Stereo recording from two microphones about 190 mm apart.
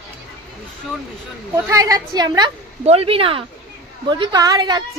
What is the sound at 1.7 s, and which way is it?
Speech, 20° right (ahead or behind).